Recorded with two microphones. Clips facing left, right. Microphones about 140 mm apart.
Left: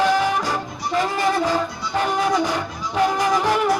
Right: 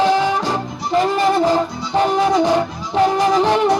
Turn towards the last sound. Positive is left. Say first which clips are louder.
# right 4 dB
turn(degrees=-25)  # may be behind; listen again after turning